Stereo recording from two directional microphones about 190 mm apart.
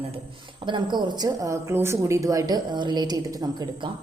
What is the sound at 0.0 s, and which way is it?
Speech, 30° right (ahead or behind).